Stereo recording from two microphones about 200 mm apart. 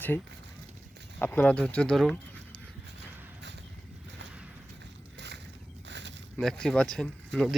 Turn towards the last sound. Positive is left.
turn(degrees=0)  # may be behind; listen again after turning